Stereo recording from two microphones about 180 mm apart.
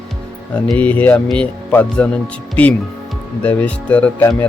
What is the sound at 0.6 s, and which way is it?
Speech, 5° left (ahead or behind).